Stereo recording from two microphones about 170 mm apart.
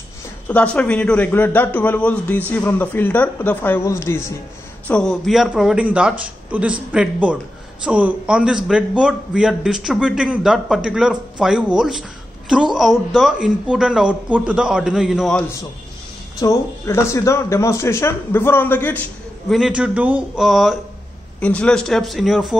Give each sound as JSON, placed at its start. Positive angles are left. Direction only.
{"t": 0.5, "sound": "speech", "side_deg": 10}
{"t": 4.8, "sound": "a man's voice", "side_deg": 5}
{"t": 16.3, "sound": "speech", "side_deg": 20}
{"t": 19.5, "sound": "a man's voice", "side_deg": -5}